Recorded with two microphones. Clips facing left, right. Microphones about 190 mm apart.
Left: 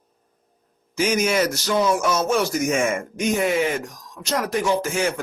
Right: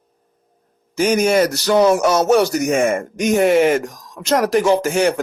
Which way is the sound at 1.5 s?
70° right (ahead or behind).